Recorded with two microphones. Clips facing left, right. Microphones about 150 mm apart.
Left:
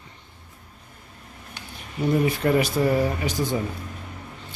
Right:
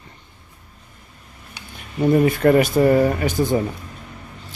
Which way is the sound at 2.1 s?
55° right (ahead or behind).